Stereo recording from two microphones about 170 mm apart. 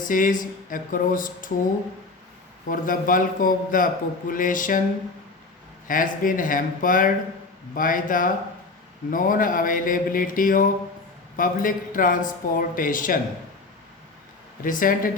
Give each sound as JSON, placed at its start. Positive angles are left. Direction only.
{"t": 0.0, "sound": "a man's voice", "side_deg": 50}
{"t": 2.6, "sound": "a man's voice", "side_deg": 55}
{"t": 5.9, "sound": "a man's voice", "side_deg": 55}
{"t": 14.6, "sound": "speech", "side_deg": 55}